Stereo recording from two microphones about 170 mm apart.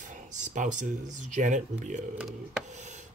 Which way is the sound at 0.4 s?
45° right (ahead or behind).